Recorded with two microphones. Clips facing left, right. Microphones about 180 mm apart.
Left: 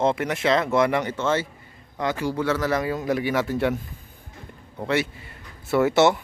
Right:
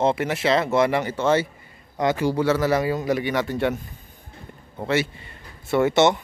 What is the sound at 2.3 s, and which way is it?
Speech, 30° right (ahead or behind).